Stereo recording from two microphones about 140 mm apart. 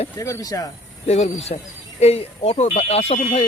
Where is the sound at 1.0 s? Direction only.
50° left (ahead or behind).